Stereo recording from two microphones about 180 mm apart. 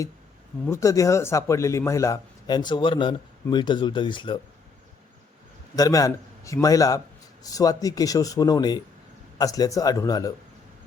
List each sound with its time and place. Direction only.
0.6 s speech: 15° left (ahead or behind)
5.7 s speech: 20° left (ahead or behind)